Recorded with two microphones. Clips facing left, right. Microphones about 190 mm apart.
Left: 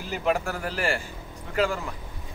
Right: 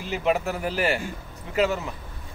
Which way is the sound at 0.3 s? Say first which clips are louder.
Right 2 dB; 15° right (ahead or behind).